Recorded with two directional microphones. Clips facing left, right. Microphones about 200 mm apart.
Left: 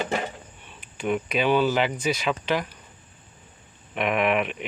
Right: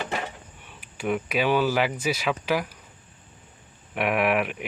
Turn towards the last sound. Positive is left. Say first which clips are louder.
# even
turn(degrees=-5)  # may be behind; listen again after turning